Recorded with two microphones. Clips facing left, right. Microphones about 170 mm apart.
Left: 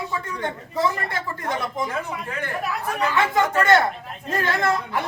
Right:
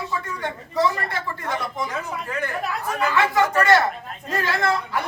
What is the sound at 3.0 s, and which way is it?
Speech, 25° left (ahead or behind).